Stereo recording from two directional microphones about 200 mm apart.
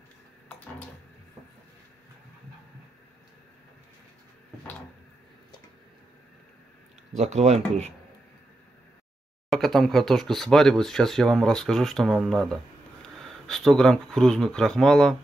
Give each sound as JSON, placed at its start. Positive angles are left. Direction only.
{"t": 7.2, "sound": "speech", "side_deg": -35}
{"t": 9.5, "sound": "speech", "side_deg": 0}